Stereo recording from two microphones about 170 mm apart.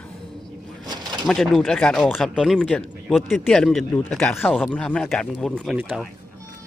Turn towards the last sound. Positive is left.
turn(degrees=0)  # may be behind; listen again after turning